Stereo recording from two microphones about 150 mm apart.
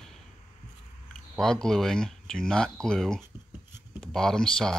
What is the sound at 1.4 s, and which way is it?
Speech, 5° left (ahead or behind).